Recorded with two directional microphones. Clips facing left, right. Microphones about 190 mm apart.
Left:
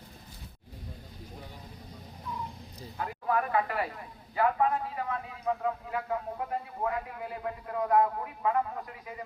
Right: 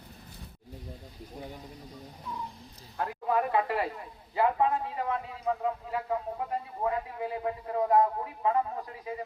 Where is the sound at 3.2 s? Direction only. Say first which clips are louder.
Right 1 dB; 25° right (ahead or behind).